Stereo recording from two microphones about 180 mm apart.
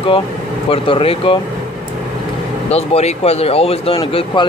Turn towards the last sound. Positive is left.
turn(degrees=25)  # may be behind; listen again after turning